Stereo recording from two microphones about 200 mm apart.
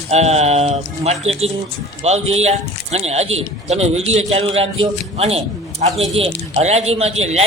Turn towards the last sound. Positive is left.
turn(degrees=-30)  # may be behind; listen again after turning